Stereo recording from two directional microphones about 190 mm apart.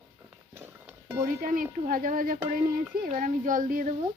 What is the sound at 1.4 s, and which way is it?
Speech, 45° right (ahead or behind).